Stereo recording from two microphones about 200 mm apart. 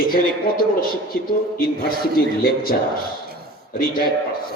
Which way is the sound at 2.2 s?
50° left (ahead or behind).